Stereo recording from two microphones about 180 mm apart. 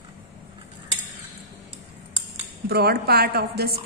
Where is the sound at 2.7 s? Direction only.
60° right (ahead or behind).